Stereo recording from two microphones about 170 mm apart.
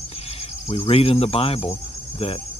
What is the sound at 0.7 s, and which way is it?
Speech, 35° left (ahead or behind).